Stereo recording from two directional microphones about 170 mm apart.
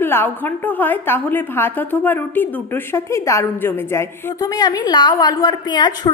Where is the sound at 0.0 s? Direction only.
10° left (ahead or behind).